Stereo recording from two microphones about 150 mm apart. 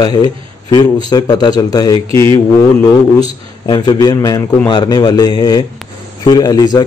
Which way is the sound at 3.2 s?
30° left (ahead or behind).